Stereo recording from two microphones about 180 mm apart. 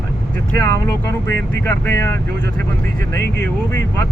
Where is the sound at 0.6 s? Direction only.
15° left (ahead or behind).